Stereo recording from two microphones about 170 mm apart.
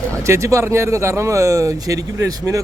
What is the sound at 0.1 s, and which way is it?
Speech, 15° right (ahead or behind).